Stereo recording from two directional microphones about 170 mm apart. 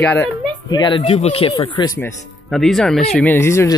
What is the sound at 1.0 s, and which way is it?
Speech, 35° left (ahead or behind).